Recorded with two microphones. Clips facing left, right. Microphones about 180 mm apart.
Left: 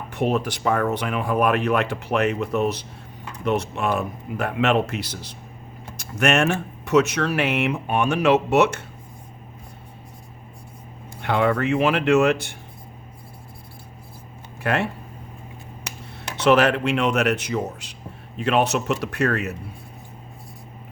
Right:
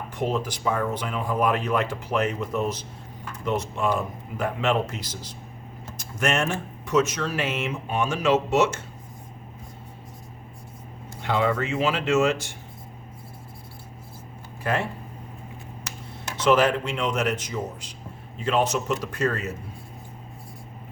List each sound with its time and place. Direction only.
0.1 s speech: 65° left (ahead or behind)
11.2 s speech: 60° left (ahead or behind)
14.6 s speech: 70° left (ahead or behind)
16.4 s speech: 70° left (ahead or behind)